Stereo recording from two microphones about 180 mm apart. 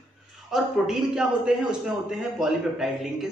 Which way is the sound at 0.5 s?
5° right (ahead or behind).